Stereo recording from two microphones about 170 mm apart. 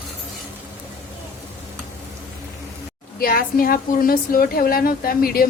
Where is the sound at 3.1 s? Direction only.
60° left (ahead or behind).